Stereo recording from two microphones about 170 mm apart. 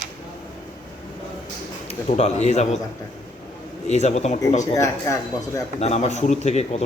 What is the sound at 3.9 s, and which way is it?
Speech, 40° left (ahead or behind).